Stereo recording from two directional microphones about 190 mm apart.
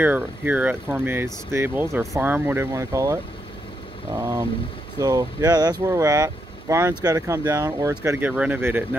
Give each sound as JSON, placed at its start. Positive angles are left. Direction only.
{"t": 0.0, "sound": "speech", "side_deg": -10}
{"t": 4.2, "sound": "speech", "side_deg": -15}